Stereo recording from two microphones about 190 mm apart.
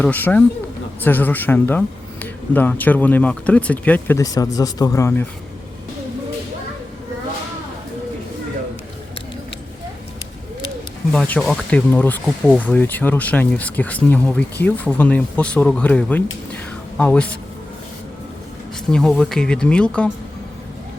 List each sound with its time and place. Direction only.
0.0 s speech: 10° left (ahead or behind)
11.1 s speech: 5° left (ahead or behind)
18.9 s speech: 5° left (ahead or behind)